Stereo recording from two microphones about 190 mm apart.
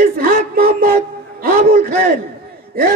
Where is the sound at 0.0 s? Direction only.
50° right (ahead or behind).